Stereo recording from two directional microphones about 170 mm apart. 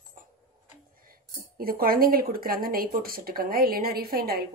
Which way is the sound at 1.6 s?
60° right (ahead or behind).